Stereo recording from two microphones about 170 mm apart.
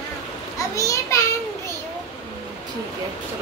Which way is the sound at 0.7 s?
20° left (ahead or behind).